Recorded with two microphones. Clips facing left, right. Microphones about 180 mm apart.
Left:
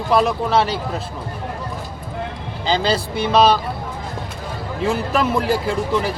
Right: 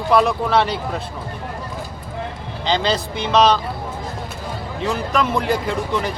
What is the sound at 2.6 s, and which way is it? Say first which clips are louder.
Speech: left 1 dB; 5° left (ahead or behind).